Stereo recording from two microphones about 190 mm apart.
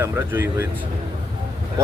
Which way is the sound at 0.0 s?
10° right (ahead or behind).